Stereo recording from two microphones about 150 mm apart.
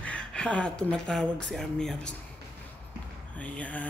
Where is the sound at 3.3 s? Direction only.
10° left (ahead or behind).